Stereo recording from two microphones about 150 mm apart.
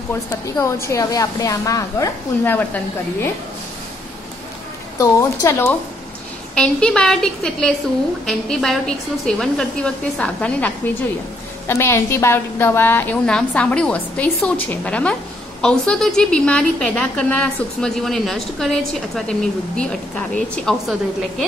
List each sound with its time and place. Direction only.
0.1 s a woman's voice: 20° left (ahead or behind)
4.9 s a woman's voice: 20° left (ahead or behind)
11.6 s a woman's voice: 20° left (ahead or behind)